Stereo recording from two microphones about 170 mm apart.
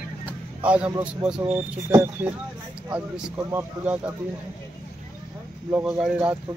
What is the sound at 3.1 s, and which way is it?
Speech, 5° right (ahead or behind).